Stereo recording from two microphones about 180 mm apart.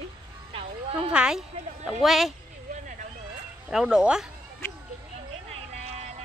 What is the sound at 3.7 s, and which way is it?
Speech, 5° right (ahead or behind).